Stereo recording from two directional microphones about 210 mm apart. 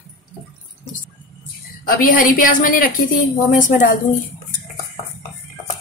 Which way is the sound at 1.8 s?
40° left (ahead or behind).